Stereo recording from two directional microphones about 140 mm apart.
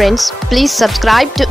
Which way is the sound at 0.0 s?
Centre (ahead or behind).